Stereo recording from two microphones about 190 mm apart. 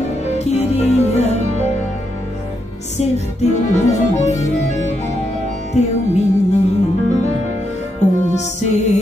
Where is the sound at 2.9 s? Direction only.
35° left (ahead or behind).